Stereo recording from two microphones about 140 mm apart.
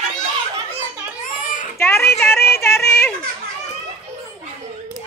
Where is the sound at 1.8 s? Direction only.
20° left (ahead or behind).